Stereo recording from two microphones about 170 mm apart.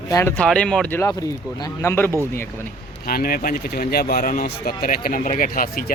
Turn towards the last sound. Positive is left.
turn(degrees=55)  # may be behind; listen again after turning